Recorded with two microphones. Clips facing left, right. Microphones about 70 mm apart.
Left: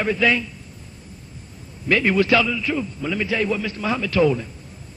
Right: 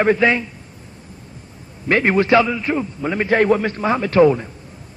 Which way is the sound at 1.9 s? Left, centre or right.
Right.